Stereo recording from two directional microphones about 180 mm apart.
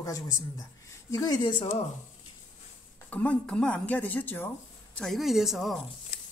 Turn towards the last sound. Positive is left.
turn(degrees=0)  # may be behind; listen again after turning